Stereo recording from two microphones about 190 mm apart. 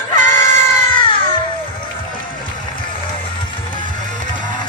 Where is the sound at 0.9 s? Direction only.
25° left (ahead or behind).